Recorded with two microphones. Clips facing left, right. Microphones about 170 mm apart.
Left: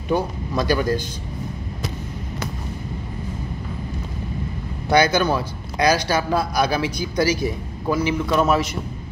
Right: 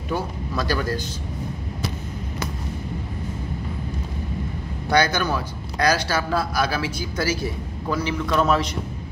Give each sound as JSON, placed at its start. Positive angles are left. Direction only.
{"t": 0.1, "sound": "speech", "side_deg": 15}
{"t": 5.1, "sound": "speech", "side_deg": 30}
{"t": 5.8, "sound": "speech", "side_deg": 15}